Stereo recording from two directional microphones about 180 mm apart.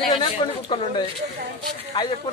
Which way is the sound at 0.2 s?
25° left (ahead or behind).